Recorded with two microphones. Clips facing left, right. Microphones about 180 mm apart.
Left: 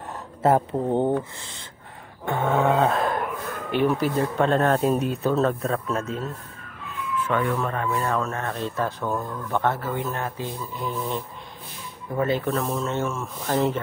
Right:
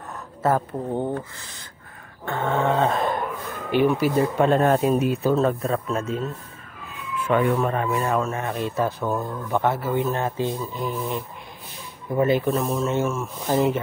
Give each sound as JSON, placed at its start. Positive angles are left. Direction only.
{"t": 0.4, "sound": "speech", "side_deg": 25}
{"t": 2.2, "sound": "a sound", "side_deg": 10}
{"t": 3.7, "sound": "speech", "side_deg": -5}
{"t": 7.2, "sound": "speech", "side_deg": -15}
{"t": 9.9, "sound": "speech", "side_deg": -25}
{"t": 12.2, "sound": "speech", "side_deg": -15}